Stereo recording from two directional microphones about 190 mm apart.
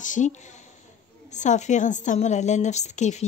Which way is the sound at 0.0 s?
40° left (ahead or behind).